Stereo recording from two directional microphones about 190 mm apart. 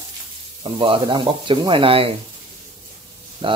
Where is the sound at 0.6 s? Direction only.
25° right (ahead or behind).